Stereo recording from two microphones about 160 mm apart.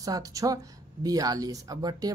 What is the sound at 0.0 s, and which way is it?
Speech, 20° right (ahead or behind).